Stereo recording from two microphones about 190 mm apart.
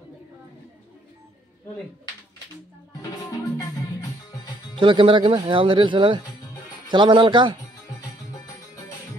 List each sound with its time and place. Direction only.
4.7 s speech: 25° right (ahead or behind)